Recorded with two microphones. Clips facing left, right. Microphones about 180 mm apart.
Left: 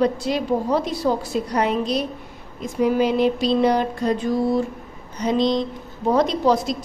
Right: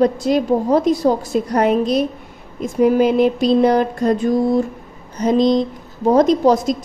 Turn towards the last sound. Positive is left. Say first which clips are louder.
# right 5 dB
turn(degrees=-45)  # may be behind; listen again after turning